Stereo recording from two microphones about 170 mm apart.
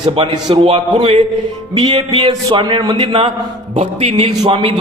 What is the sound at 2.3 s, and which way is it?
A man's voice, 25° right (ahead or behind).